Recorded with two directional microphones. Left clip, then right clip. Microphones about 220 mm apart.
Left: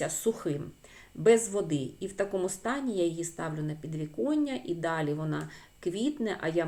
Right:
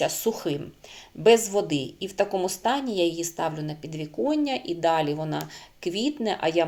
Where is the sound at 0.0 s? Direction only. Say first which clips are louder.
Right 5 dB; 10° left (ahead or behind).